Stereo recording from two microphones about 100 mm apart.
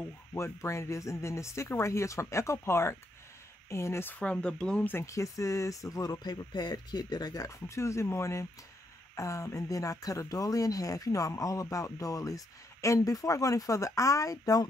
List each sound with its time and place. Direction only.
0.3 s speech: 30° left (ahead or behind); by 4.9 s 10° left (ahead or behind)
4.9 s speech: 30° left (ahead or behind)